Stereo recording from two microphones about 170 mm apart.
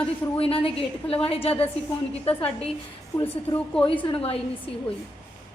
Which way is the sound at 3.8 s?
30° left (ahead or behind).